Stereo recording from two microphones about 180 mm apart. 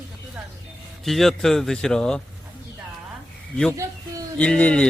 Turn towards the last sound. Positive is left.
turn(degrees=5)  # may be behind; listen again after turning